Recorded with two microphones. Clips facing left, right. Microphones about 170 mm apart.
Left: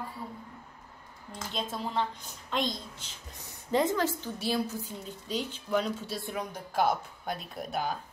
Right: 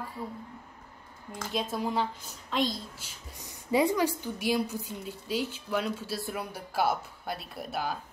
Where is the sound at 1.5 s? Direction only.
10° right (ahead or behind).